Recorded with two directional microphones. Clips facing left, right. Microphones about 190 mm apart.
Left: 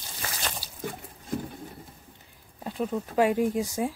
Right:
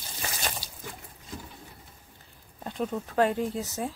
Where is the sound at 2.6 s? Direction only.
5° left (ahead or behind).